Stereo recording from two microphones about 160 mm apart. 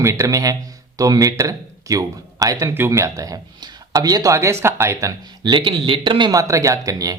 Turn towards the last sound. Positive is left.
turn(degrees=-20)  # may be behind; listen again after turning